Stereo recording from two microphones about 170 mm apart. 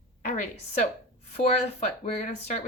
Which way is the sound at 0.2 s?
50° left (ahead or behind).